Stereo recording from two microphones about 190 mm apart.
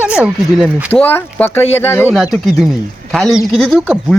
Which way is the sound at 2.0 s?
5° right (ahead or behind).